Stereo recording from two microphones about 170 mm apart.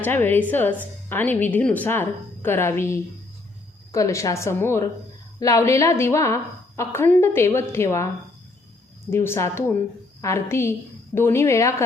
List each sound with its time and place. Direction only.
0.0 s a woman's voice: 10° left (ahead or behind)